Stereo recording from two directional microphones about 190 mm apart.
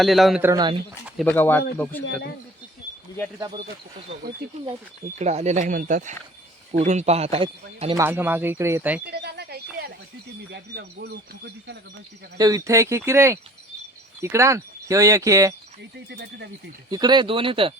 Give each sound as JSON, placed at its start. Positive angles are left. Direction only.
{"t": 0.0, "sound": "a man's voice", "side_deg": 0}
{"t": 0.4, "sound": "speech", "side_deg": -20}
{"t": 1.2, "sound": "speech", "side_deg": 10}
{"t": 5.2, "sound": "speech", "side_deg": -35}
{"t": 7.9, "sound": "speech", "side_deg": -10}
{"t": 9.0, "sound": "a sound", "side_deg": -60}
{"t": 10.5, "sound": "speech", "side_deg": -60}
{"t": 12.4, "sound": "speech", "side_deg": -20}
{"t": 15.8, "sound": "speech", "side_deg": -65}
{"t": 16.9, "sound": "speech", "side_deg": -20}